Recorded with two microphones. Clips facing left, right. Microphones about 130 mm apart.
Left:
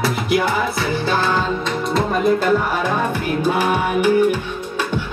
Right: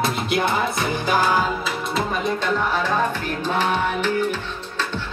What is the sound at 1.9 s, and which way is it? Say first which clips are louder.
Music: left 7 dB; 5° left (ahead or behind).